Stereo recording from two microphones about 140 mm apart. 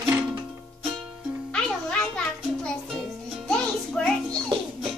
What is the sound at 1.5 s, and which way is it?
Music, 5° left (ahead or behind).